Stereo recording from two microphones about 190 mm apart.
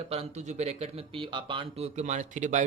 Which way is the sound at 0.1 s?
35° right (ahead or behind).